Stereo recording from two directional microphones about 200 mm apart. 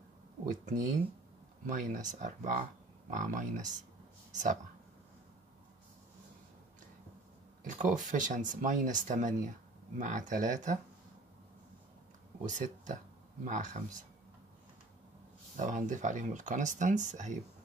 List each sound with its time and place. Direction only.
0.5 s speech: 40° right (ahead or behind)
7.6 s speech: 40° right (ahead or behind)
12.4 s speech: 40° right (ahead or behind)
15.5 s speech: 40° right (ahead or behind)